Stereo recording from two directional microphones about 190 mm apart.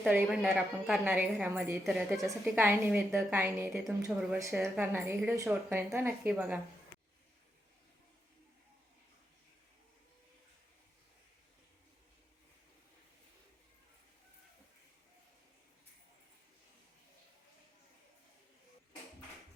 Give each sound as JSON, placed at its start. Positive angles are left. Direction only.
{"t": 0.0, "sound": "a woman's voice", "side_deg": -5}